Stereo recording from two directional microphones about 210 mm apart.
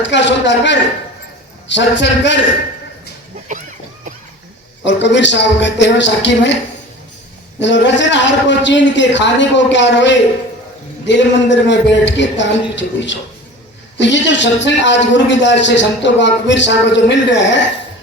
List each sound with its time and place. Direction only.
0.0 s a man's voice: 60° left (ahead or behind)
4.9 s a man's voice: 60° left (ahead or behind)
7.6 s a man's voice: 60° left (ahead or behind)